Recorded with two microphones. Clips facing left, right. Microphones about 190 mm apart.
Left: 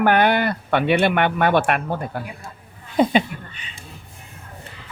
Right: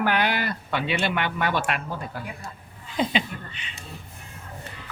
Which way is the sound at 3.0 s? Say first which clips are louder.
Left 8 dB; 50° left (ahead or behind).